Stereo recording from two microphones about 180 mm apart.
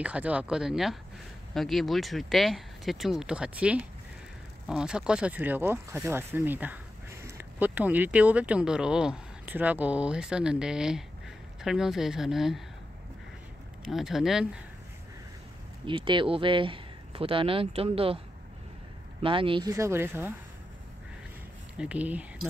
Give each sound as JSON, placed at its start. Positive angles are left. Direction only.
{"t": 0.0, "sound": "speech", "side_deg": -5}
{"t": 13.8, "sound": "speech", "side_deg": 0}
{"t": 15.8, "sound": "speech", "side_deg": -30}
{"t": 19.2, "sound": "speech", "side_deg": -30}
{"t": 19.7, "sound": "speech", "side_deg": -15}
{"t": 21.7, "sound": "speech", "side_deg": -5}